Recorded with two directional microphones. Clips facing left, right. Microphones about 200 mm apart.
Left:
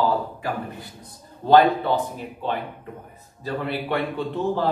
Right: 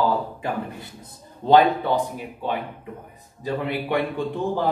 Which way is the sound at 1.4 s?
15° right (ahead or behind).